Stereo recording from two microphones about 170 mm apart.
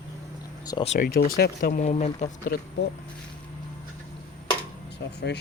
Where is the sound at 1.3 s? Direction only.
65° left (ahead or behind).